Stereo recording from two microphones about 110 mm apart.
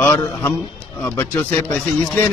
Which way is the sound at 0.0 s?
20° left (ahead or behind).